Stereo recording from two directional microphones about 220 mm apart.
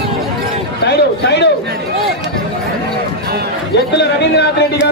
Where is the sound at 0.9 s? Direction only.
50° left (ahead or behind).